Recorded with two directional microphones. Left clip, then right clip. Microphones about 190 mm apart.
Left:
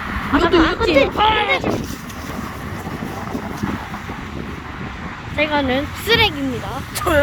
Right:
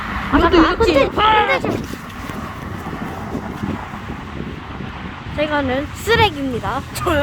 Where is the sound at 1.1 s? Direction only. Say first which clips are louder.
Right 2 dB; 35° right (ahead or behind).